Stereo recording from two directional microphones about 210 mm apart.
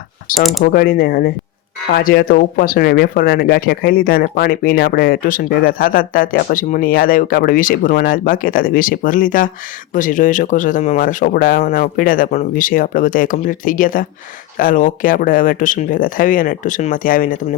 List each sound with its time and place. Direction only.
0.6 s speech: 45° left (ahead or behind)